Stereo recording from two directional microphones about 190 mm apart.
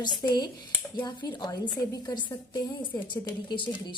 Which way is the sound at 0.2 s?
20° left (ahead or behind).